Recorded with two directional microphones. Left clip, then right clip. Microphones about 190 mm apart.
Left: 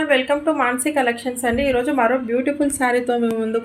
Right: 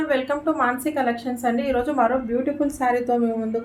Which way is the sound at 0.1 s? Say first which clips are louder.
Left 6 dB; 30° left (ahead or behind).